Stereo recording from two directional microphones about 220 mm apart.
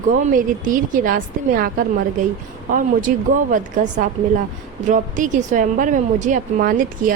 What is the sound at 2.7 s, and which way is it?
Speech, 35° right (ahead or behind).